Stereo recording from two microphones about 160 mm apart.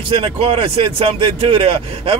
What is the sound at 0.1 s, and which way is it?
Speech, 35° right (ahead or behind).